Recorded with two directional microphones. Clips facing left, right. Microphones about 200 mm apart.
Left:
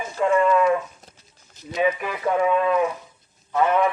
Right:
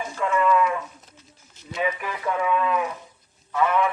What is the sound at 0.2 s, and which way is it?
Speech, 30° left (ahead or behind).